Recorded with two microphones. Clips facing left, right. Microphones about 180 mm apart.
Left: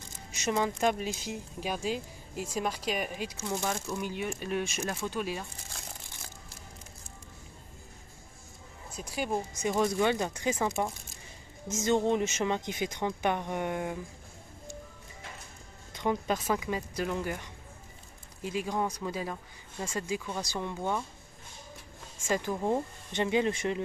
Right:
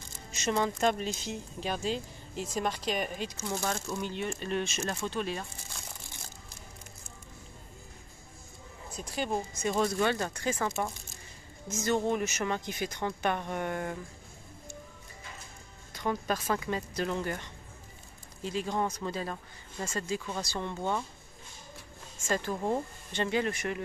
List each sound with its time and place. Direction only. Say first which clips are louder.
0.3 s speech: even; 15° left (ahead or behind)
8.9 s speech: even; 5° left (ahead or behind)
15.9 s speech: left 2 dB; 20° left (ahead or behind)
22.3 s speech: left 1 dB; 15° left (ahead or behind)